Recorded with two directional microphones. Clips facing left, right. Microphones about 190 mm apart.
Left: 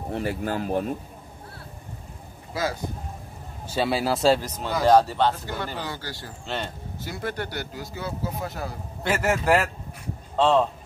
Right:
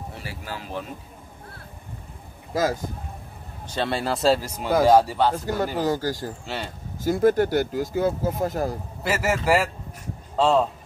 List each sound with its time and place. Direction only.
0.1 s speech: 55° left (ahead or behind)
2.5 s speech: 45° right (ahead or behind)
3.6 s a man's voice: 5° left (ahead or behind)
5.8 s speech: 40° right (ahead or behind)
6.4 s speech: 5° right (ahead or behind)
7.1 s speech: 45° right (ahead or behind)
9.0 s a man's voice: 5° right (ahead or behind)